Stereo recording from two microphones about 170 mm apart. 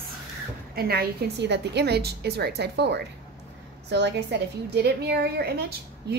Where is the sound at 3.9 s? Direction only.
90° right.